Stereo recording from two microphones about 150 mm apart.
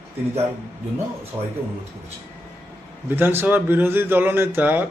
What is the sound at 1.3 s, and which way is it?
Speech, 15° right (ahead or behind).